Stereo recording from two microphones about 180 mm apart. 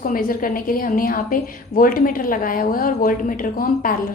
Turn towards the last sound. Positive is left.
turn(degrees=50)  # may be behind; listen again after turning